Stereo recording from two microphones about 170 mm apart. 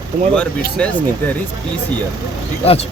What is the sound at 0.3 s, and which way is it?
Speech, 10° left (ahead or behind).